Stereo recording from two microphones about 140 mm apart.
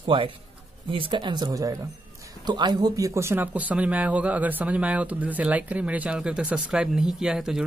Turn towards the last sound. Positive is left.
turn(degrees=-5)  # may be behind; listen again after turning